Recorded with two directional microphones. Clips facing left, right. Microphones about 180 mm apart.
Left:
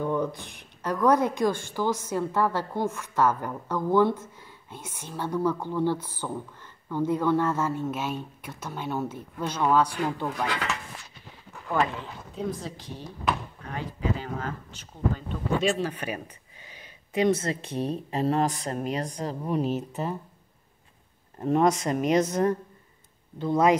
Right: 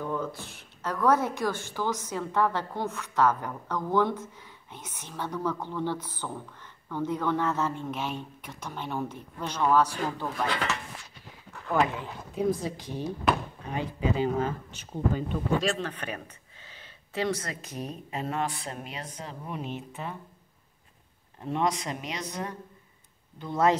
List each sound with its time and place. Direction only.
0.0 s a woman's voice: 15° left (ahead or behind)
11.7 s a woman's voice: 5° right (ahead or behind)
15.6 s speech: 5° left (ahead or behind); by 20.2 s 40° left (ahead or behind)
21.4 s speech: 45° left (ahead or behind)
23.4 s a woman's voice: 15° left (ahead or behind)